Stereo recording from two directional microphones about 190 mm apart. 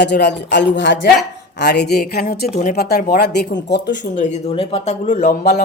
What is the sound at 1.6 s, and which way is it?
Speech, 60° left (ahead or behind).